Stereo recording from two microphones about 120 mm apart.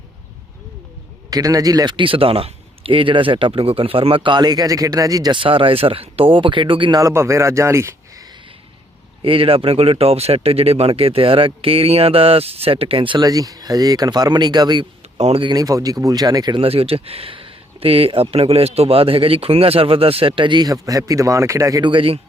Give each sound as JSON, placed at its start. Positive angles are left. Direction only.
{"t": 1.3, "sound": "a man's voice", "side_deg": -30}
{"t": 7.0, "sound": "speech", "side_deg": -25}
{"t": 9.2, "sound": "a man's voice", "side_deg": -50}
{"t": 13.2, "sound": "speech", "side_deg": -30}
{"t": 15.2, "sound": "speech", "side_deg": -55}
{"t": 15.4, "sound": "speech", "side_deg": -30}
{"t": 16.6, "sound": "a man's voice", "side_deg": -55}
{"t": 21.8, "sound": "a man's voice", "side_deg": -45}